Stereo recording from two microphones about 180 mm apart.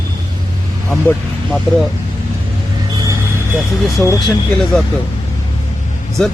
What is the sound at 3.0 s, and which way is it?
Vehicle, 15° right (ahead or behind).